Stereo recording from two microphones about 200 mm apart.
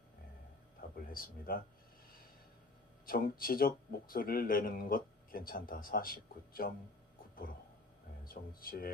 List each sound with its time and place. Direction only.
0.8 s a sound: 45° left (ahead or behind)
1.1 s speech: 45° left (ahead or behind)
3.1 s speech: 45° left (ahead or behind)
8.2 s speech: 45° left (ahead or behind)